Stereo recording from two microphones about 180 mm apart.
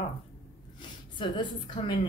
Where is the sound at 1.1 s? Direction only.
25° left (ahead or behind).